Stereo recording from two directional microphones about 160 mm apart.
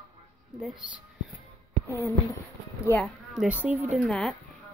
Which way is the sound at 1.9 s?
15° left (ahead or behind).